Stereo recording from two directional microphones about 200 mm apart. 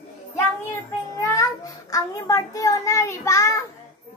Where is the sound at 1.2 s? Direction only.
15° left (ahead or behind).